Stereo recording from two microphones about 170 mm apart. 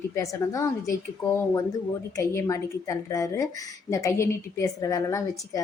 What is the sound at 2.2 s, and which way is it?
A woman's voice, 20° left (ahead or behind).